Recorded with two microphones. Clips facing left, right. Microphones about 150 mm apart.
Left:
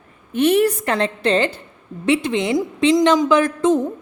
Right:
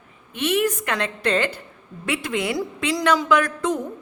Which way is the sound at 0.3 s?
40° left (ahead or behind).